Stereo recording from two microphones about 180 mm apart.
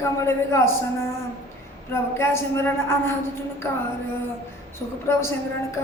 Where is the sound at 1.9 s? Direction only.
15° left (ahead or behind).